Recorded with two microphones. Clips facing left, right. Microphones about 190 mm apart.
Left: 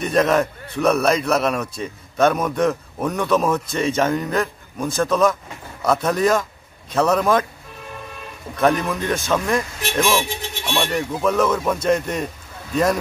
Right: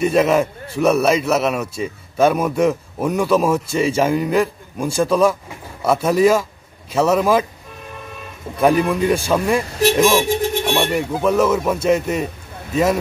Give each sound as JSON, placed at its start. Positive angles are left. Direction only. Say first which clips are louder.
{"t": 0.0, "sound": "a man's voice", "louder": "right 3 dB", "side_deg": -5}
{"t": 8.5, "sound": "a man's voice", "louder": "right 4 dB", "side_deg": -10}
{"t": 9.7, "sound": "speech", "louder": "right 12 dB", "side_deg": -40}
{"t": 10.2, "sound": "speech", "louder": "right 10 dB", "side_deg": -50}
{"t": 10.9, "sound": "a man's voice", "louder": "right 3 dB", "side_deg": -10}